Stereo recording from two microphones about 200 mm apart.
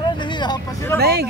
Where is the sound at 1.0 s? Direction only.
50° right (ahead or behind).